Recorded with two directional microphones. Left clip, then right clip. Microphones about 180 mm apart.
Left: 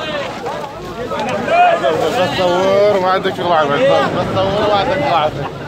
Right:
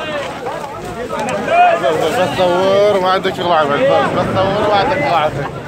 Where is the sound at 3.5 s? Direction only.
10° right (ahead or behind).